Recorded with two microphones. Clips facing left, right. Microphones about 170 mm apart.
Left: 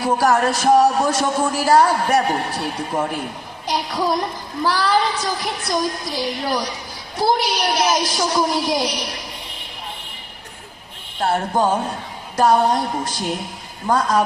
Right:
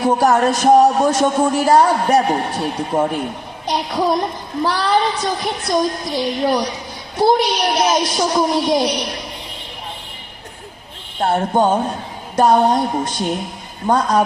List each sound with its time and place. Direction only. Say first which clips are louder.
0.0 s speech: right 3 dB; 20° right (ahead or behind)
11.2 s speech: right 3 dB; 25° right (ahead or behind)